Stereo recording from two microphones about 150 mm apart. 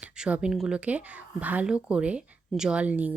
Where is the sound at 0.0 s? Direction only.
5° right (ahead or behind).